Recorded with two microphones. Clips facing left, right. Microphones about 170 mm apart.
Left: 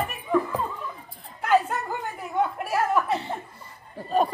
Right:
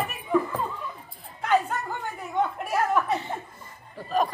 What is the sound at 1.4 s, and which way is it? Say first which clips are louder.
Chatter: left 2 dB; 5° left (ahead or behind).